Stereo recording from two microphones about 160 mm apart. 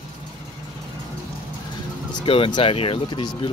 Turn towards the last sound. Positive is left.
turn(degrees=35)  # may be behind; listen again after turning